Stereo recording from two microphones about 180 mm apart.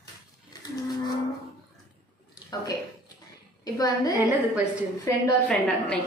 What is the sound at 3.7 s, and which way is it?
Speech, 20° left (ahead or behind).